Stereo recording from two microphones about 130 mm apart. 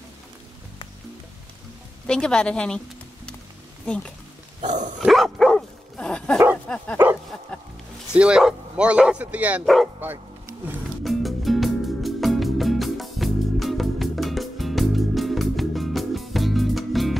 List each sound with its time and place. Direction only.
2.0 s a woman's voice: 5° left (ahead or behind)
3.8 s speech: 5° left (ahead or behind)
4.6 s dog: 70° right (ahead or behind)
5.0 s dog: centre (ahead or behind)
6.7 s a woman's voice: 10° left (ahead or behind)
8.1 s a man's voice: 5° right (ahead or behind)
11.1 s music: centre (ahead or behind)